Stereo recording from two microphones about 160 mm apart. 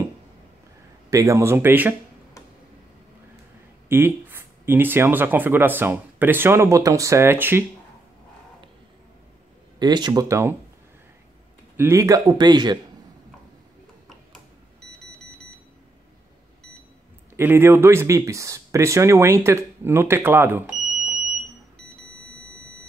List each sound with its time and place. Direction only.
1.1 s speech: 20° right (ahead or behind)
3.9 s speech: 15° right (ahead or behind)
9.8 s speech: 25° right (ahead or behind)
11.7 s speech: 15° right (ahead or behind)
17.4 s speech: 15° right (ahead or behind)